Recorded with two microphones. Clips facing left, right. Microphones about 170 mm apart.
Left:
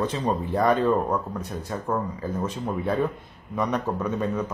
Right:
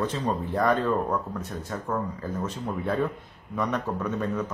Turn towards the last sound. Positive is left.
turn(degrees=15)  # may be behind; listen again after turning